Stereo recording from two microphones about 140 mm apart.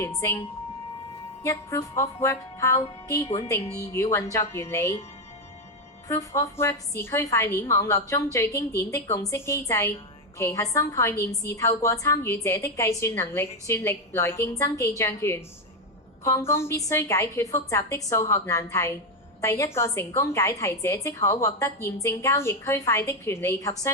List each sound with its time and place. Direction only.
0.0 s a woman's voice: 20° left (ahead or behind)
6.1 s a woman's voice: 25° left (ahead or behind)